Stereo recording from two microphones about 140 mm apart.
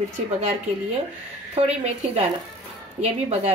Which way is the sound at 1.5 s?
50° right (ahead or behind).